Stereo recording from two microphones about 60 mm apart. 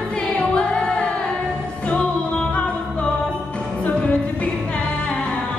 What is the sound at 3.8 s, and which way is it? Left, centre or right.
Music, left.